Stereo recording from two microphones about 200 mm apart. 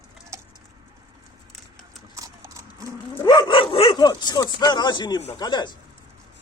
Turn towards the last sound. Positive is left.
turn(degrees=20)  # may be behind; listen again after turning